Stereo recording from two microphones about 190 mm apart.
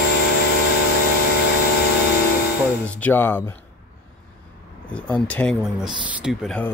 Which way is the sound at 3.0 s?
10° left (ahead or behind).